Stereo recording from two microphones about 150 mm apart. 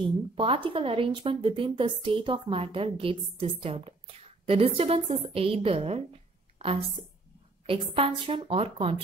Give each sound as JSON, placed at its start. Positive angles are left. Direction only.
{"t": 0.0, "sound": "a woman's voice", "side_deg": -35}